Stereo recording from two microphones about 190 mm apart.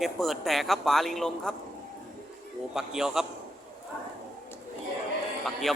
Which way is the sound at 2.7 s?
Centre (ahead or behind).